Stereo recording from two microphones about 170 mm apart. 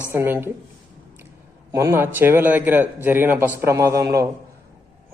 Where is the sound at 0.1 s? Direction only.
10° right (ahead or behind).